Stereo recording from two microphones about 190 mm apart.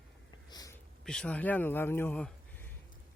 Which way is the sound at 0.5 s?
20° left (ahead or behind).